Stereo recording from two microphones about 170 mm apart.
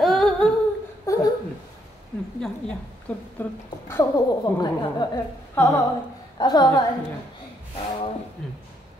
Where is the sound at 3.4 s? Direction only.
15° left (ahead or behind).